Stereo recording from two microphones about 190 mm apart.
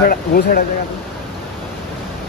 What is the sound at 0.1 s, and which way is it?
Speech, 50° left (ahead or behind).